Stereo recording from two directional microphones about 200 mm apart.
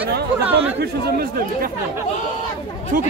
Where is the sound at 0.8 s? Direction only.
50° right (ahead or behind).